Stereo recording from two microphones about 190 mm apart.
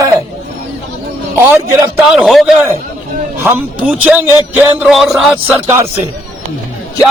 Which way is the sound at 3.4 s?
10° right (ahead or behind).